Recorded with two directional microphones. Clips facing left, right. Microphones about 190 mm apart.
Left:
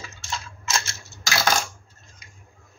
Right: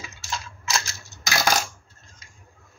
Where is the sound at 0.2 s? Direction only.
Centre (ahead or behind).